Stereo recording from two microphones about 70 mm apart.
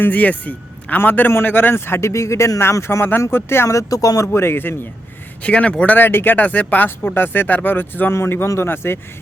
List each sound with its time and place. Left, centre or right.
0.0 s a man's voice: left
3.8 s speech: left
4.3 s speech: left
5.4 s a man's voice: centre; by 9.0 s left